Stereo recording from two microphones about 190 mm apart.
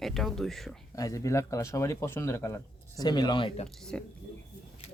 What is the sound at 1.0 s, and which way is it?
Speech, 15° left (ahead or behind).